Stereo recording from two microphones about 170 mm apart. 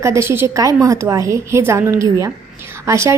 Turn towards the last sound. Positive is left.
turn(degrees=-15)  # may be behind; listen again after turning